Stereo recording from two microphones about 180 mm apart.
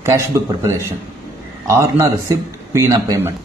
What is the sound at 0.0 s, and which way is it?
A man's voice, 15° right (ahead or behind).